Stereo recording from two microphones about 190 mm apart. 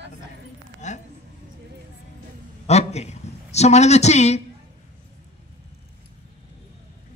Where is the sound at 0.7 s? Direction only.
40° left (ahead or behind).